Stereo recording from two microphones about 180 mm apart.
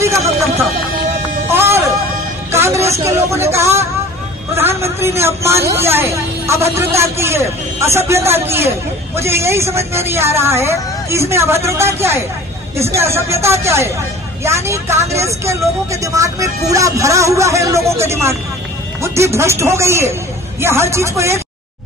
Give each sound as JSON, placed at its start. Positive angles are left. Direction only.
{"t": 0.0, "sound": "music", "side_deg": -15}
{"t": 1.5, "sound": "music", "side_deg": -15}
{"t": 2.5, "sound": "a sound", "side_deg": -15}
{"t": 3.5, "sound": "a man's voice", "side_deg": -15}